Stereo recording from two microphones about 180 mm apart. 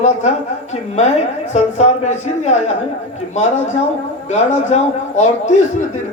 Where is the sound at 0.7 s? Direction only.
40° left (ahead or behind).